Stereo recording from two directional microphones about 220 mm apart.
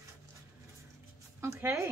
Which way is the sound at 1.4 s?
10° right (ahead or behind).